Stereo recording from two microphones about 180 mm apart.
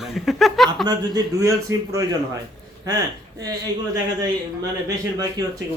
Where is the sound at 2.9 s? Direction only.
20° right (ahead or behind).